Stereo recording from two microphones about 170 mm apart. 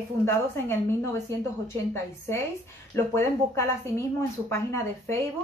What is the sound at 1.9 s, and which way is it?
A woman's voice, 15° left (ahead or behind).